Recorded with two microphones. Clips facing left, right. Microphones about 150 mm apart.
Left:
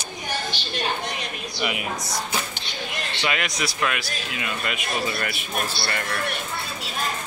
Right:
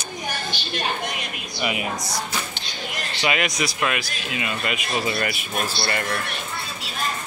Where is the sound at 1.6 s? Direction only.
Centre (ahead or behind).